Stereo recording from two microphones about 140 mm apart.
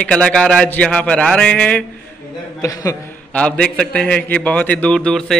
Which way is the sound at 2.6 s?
25° left (ahead or behind).